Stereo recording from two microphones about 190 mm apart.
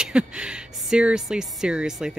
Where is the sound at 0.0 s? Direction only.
5° right (ahead or behind).